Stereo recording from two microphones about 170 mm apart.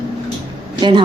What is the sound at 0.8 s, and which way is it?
Speech, 25° right (ahead or behind).